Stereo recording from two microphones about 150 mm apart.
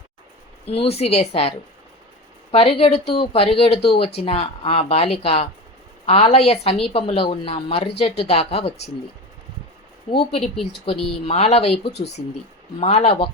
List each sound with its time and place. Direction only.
0.7 s a woman's voice: 40° left (ahead or behind)
10.1 s speech: 35° left (ahead or behind)
10.4 s speech: centre (ahead or behind)
11.3 s a woman's voice: 45° left (ahead or behind)